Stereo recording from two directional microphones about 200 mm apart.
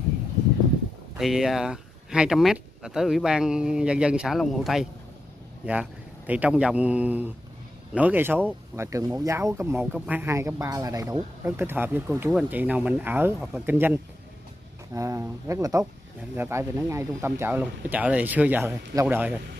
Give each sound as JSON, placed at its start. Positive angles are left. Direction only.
{"t": 1.1, "sound": "speech", "side_deg": 0}
{"t": 15.0, "sound": "speech", "side_deg": -15}